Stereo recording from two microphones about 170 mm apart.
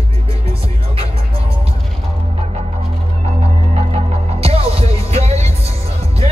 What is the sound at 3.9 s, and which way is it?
Music, 35° right (ahead or behind).